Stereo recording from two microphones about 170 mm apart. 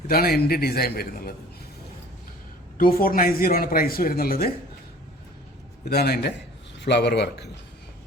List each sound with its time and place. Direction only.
0.1 s speech: 60° left (ahead or behind)
2.7 s speech: 55° left (ahead or behind)
5.8 s a man's voice: 65° left (ahead or behind)
6.8 s speech: 80° left